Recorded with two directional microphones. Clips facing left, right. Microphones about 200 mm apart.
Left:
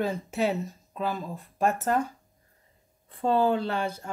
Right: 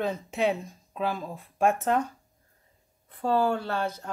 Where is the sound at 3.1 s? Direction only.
25° left (ahead or behind).